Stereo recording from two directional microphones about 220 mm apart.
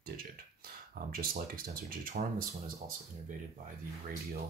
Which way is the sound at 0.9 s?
40° right (ahead or behind).